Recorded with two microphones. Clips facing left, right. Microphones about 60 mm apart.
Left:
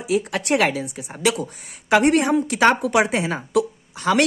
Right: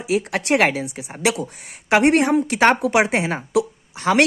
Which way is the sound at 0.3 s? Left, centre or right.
Right.